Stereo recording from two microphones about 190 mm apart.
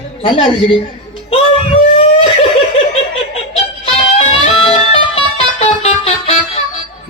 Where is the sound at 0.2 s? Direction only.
25° left (ahead or behind).